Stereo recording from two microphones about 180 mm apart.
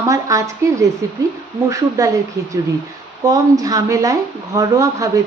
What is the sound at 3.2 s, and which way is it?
Speech, 20° right (ahead or behind).